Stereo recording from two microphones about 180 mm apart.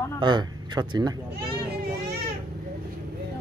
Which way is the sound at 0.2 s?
25° right (ahead or behind).